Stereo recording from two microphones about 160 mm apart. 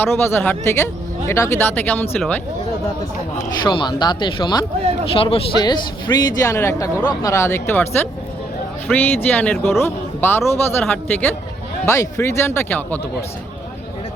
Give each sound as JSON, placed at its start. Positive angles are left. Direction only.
{"t": 0.0, "sound": "a man's voice", "side_deg": 15}
{"t": 3.6, "sound": "speech", "side_deg": 30}
{"t": 6.1, "sound": "a man's voice", "side_deg": 15}
{"t": 8.9, "sound": "a man's voice", "side_deg": 10}